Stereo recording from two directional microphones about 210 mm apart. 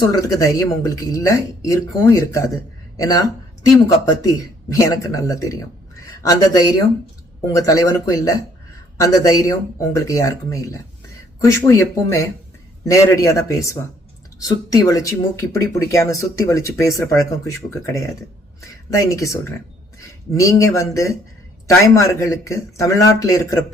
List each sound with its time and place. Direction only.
0.2 s speech: 15° left (ahead or behind)
18.9 s speech: 15° left (ahead or behind)